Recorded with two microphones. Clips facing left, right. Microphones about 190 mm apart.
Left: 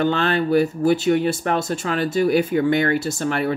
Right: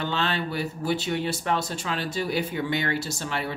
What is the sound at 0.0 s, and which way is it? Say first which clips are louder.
Speech: left 8 dB; 50° left (ahead or behind).